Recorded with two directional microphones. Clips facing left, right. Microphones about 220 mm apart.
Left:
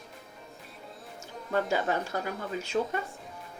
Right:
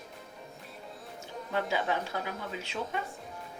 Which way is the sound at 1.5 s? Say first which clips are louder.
Left 3 dB; 45° left (ahead or behind).